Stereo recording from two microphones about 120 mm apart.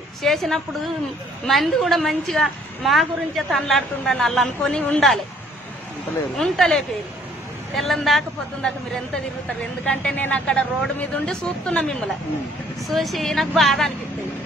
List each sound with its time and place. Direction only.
0.2 s a woman's voice: centre (ahead or behind)
6.3 s a woman's voice: centre (ahead or behind)
9.8 s a woman's voice: 10° left (ahead or behind)